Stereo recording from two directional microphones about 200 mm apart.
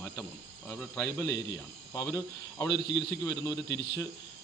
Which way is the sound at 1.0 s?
15° left (ahead or behind).